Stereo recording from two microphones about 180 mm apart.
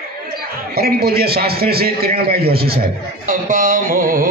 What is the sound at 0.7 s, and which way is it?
A man's voice, 60° right (ahead or behind).